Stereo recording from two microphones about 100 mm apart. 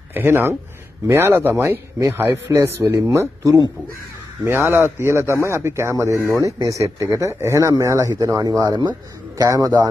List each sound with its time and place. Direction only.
0.1 s speech: 20° right (ahead or behind)
4.5 s speech: 20° right (ahead or behind)